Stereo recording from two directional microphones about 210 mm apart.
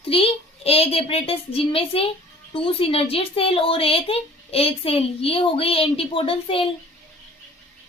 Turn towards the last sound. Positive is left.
turn(degrees=25)  # may be behind; listen again after turning